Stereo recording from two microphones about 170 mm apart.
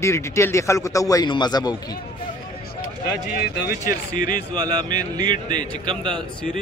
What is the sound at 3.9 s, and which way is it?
Speech, 55° left (ahead or behind).